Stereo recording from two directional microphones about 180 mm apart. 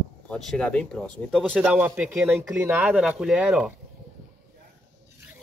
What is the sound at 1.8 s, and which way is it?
Speech, 10° right (ahead or behind).